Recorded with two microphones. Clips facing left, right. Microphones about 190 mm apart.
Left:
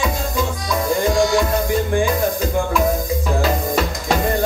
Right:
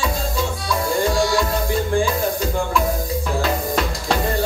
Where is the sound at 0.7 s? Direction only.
20° left (ahead or behind).